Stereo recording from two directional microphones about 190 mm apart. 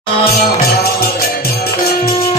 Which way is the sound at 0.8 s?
55° left (ahead or behind).